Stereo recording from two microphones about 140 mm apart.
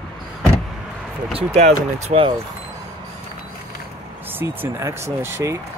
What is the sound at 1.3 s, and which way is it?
Speech, 50° right (ahead or behind).